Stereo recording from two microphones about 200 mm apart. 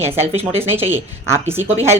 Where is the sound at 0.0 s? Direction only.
10° right (ahead or behind).